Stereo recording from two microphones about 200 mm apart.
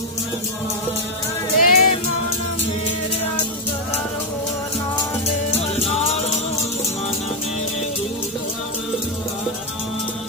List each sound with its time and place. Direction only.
1.5 s music: 45° left (ahead or behind)